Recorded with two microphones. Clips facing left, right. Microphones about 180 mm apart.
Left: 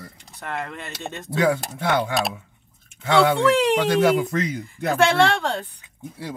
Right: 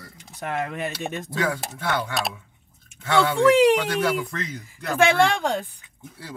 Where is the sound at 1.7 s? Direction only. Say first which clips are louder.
Left 4 dB; 25° left (ahead or behind).